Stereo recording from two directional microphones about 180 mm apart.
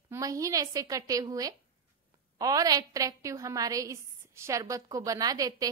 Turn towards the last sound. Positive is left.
turn(degrees=-20)  # may be behind; listen again after turning